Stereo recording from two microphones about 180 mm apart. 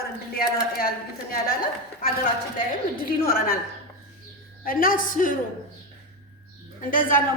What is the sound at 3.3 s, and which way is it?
Speech, 55° left (ahead or behind).